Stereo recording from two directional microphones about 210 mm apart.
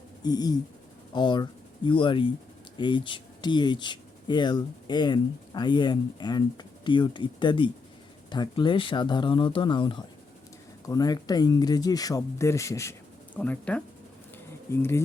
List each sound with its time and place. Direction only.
0.2 s speech: 20° left (ahead or behind)